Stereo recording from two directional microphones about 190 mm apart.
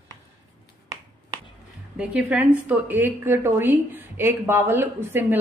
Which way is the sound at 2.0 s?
5° right (ahead or behind).